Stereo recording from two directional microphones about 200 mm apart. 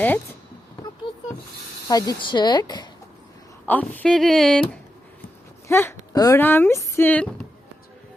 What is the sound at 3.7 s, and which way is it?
Speech, 10° left (ahead or behind).